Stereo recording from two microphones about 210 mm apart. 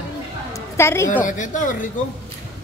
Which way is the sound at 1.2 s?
35° left (ahead or behind).